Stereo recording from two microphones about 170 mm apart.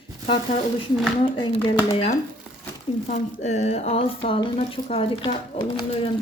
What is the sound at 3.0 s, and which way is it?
Speech, 45° left (ahead or behind).